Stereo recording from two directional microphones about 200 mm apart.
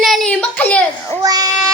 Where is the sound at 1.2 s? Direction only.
15° right (ahead or behind).